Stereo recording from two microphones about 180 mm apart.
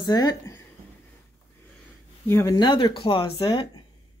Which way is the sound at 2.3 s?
15° left (ahead or behind).